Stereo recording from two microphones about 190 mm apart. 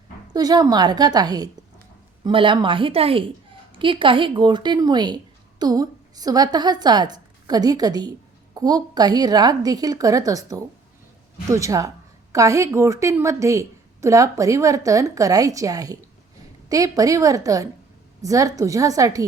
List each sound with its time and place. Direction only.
0.3 s a woman's voice: 20° right (ahead or behind)